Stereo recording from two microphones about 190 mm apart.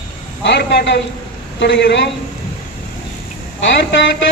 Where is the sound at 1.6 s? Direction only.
65° left (ahead or behind).